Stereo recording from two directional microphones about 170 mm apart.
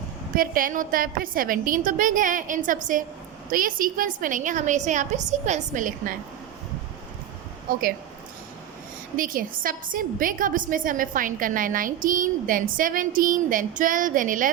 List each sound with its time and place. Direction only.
0.3 s a woman's voice: 55° right (ahead or behind)
7.7 s speech: 60° right (ahead or behind)
9.1 s a woman's voice: 55° right (ahead or behind)